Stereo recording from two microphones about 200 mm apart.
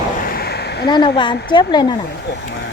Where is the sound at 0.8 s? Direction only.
20° left (ahead or behind).